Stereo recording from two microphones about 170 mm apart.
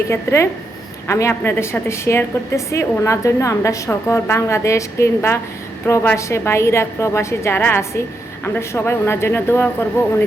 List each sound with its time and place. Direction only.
0.1 s a woman's voice: 15° left (ahead or behind)